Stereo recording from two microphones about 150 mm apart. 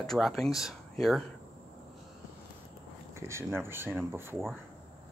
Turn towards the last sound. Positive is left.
turn(degrees=-15)  # may be behind; listen again after turning